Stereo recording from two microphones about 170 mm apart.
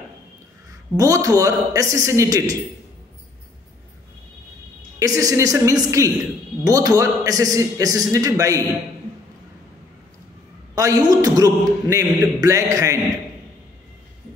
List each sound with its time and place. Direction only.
0.9 s a man's voice: 20° right (ahead or behind)
4.9 s a man's voice: 20° right (ahead or behind)
10.7 s a man's voice: 20° right (ahead or behind)